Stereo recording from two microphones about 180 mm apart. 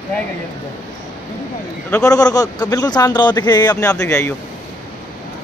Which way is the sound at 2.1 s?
20° left (ahead or behind).